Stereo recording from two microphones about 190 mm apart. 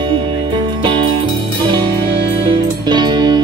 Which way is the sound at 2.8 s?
25° right (ahead or behind).